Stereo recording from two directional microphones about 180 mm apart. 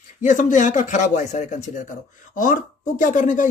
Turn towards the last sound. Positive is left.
turn(degrees=45)  # may be behind; listen again after turning